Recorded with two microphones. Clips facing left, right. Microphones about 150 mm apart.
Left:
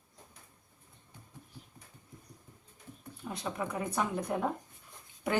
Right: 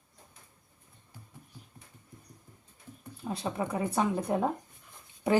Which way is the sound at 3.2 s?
25° right (ahead or behind).